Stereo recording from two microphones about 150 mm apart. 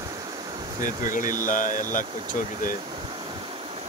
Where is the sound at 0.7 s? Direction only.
60° left (ahead or behind).